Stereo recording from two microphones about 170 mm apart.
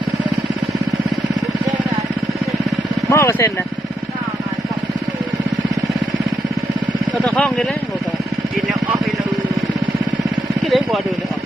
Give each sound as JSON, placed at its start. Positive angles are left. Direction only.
{"t": 3.1, "sound": "vehicle", "side_deg": 15}
{"t": 7.3, "sound": "speech", "side_deg": 5}
{"t": 10.7, "sound": "vehicle", "side_deg": 0}